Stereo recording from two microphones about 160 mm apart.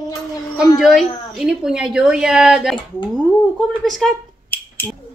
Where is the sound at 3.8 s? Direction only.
Centre (ahead or behind).